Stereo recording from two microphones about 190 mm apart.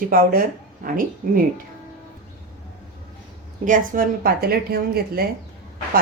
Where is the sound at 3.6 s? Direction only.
45° right (ahead or behind).